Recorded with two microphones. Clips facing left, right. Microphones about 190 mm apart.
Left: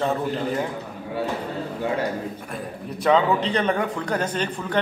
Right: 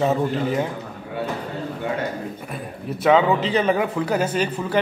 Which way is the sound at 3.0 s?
5° right (ahead or behind).